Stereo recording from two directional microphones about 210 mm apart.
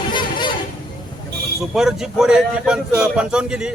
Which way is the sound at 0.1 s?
20° left (ahead or behind).